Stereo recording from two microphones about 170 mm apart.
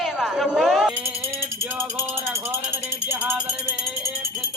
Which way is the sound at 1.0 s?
15° right (ahead or behind).